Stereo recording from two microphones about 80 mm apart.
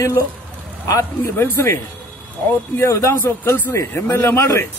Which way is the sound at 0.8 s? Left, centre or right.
Left.